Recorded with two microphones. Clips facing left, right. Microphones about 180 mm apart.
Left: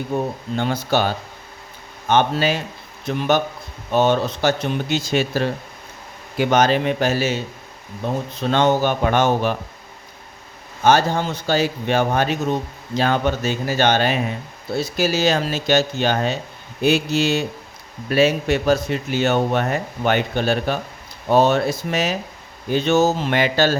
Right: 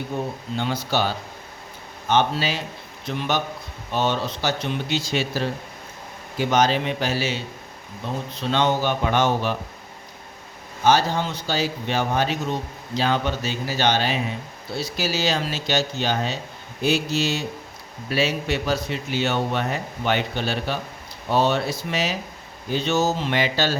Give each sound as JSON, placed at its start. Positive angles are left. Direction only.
{"t": 0.5, "sound": "speech", "side_deg": 50}
{"t": 10.8, "sound": "speech", "side_deg": 50}